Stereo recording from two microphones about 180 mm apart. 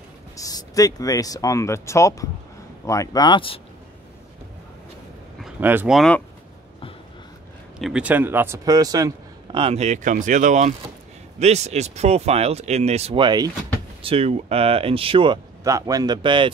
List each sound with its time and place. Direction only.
0.4 s speech: 20° left (ahead or behind)
5.4 s speech: 10° right (ahead or behind)
5.9 s speech: 5° left (ahead or behind)
7.8 s a man's voice: 5° right (ahead or behind); by 16.5 s 25° right (ahead or behind)